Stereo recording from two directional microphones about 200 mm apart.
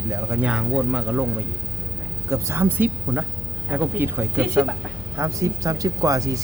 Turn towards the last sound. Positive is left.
turn(degrees=-15)  # may be behind; listen again after turning